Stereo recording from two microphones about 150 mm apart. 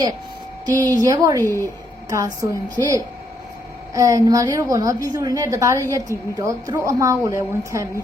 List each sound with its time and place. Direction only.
0.6 s a woman's voice: 25° right (ahead or behind)
3.9 s a woman's voice: 20° right (ahead or behind)